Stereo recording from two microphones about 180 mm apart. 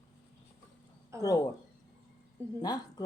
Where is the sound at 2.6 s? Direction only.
20° left (ahead or behind).